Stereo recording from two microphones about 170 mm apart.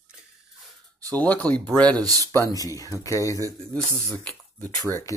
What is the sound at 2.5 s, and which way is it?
Speech, 20° left (ahead or behind).